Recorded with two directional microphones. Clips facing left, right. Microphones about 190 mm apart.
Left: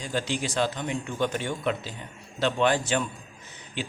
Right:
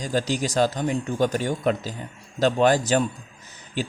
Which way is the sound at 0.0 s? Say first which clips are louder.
Right 5 dB; 40° right (ahead or behind).